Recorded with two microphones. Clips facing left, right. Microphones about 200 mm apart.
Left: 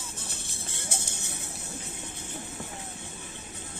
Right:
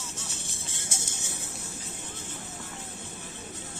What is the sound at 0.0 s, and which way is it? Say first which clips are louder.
Music: right 1 dB; 55° left (ahead or behind).